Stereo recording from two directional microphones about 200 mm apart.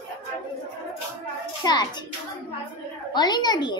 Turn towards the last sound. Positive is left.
turn(degrees=20)  # may be behind; listen again after turning